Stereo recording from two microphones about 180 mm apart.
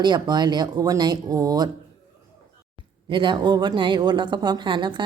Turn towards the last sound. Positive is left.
turn(degrees=-25)  # may be behind; listen again after turning